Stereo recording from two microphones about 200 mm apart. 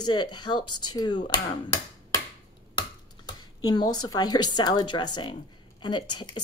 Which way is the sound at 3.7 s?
20° left (ahead or behind).